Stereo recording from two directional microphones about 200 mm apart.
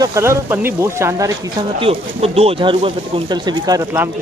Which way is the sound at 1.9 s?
30° right (ahead or behind).